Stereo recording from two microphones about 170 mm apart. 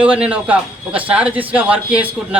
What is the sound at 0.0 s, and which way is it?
A man's voice, 5° right (ahead or behind).